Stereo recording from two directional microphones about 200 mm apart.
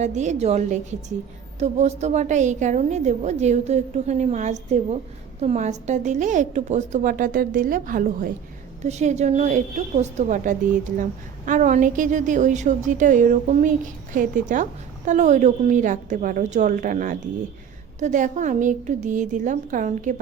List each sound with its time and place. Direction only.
0.0 s a woman's voice: 35° right (ahead or behind)